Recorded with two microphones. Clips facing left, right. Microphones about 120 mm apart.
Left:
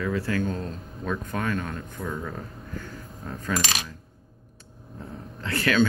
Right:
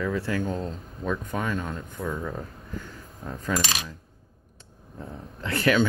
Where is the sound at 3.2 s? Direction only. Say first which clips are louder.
Right 1 dB; 20° right (ahead or behind).